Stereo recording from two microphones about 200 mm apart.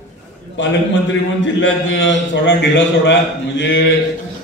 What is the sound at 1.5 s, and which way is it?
A man's voice, 70° left (ahead or behind).